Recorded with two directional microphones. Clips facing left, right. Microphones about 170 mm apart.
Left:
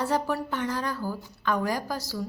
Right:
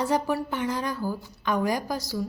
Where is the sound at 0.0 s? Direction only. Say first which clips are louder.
Right 2 dB; 15° right (ahead or behind).